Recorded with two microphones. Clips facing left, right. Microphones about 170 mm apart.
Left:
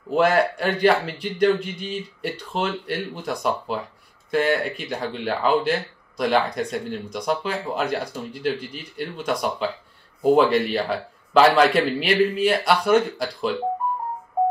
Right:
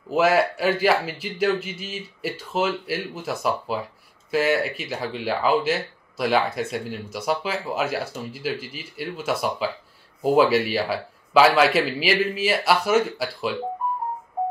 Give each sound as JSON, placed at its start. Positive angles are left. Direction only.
{"t": 0.1, "sound": "speech", "side_deg": -5}